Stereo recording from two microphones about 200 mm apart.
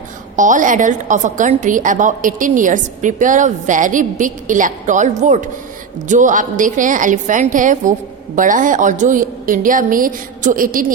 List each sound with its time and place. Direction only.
0.3 s a woman's voice: 40° right (ahead or behind)